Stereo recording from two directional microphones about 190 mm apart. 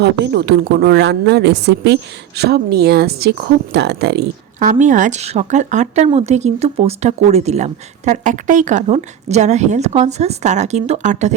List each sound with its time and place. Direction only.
0.0 s a woman's voice: 65° right (ahead or behind)
4.6 s speech: 40° right (ahead or behind)